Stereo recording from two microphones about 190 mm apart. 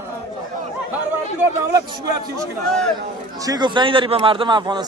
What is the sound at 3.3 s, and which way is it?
A man's voice, 20° right (ahead or behind).